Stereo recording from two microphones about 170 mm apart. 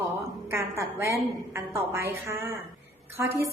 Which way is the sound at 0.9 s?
15° right (ahead or behind).